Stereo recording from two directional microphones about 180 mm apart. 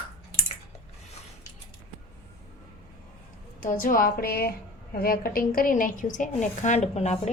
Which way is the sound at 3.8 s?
50° left (ahead or behind).